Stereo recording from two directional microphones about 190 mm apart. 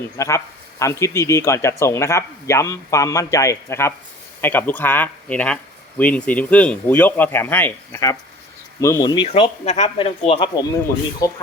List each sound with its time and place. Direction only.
0.2 s speech: 15° left (ahead or behind)